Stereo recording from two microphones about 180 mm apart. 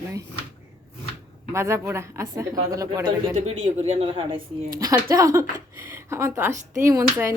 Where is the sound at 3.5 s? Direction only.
35° right (ahead or behind).